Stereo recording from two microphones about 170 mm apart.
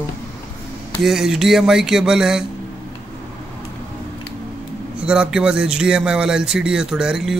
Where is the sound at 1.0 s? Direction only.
Centre (ahead or behind).